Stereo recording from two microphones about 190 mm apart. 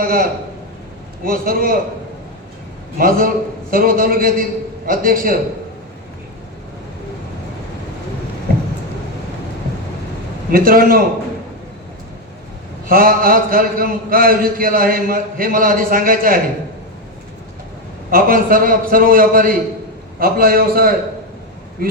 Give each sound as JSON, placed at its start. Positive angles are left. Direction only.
{"t": 0.0, "sound": "a man's voice", "side_deg": -50}
{"t": 3.0, "sound": "a man's voice", "side_deg": -50}
{"t": 10.5, "sound": "a man's voice", "side_deg": -50}
{"t": 12.9, "sound": "a man's voice", "side_deg": -50}
{"t": 18.1, "sound": "a man's voice", "side_deg": -50}